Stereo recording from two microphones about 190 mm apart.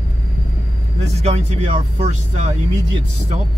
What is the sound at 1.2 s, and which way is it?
Speech, 35° right (ahead or behind).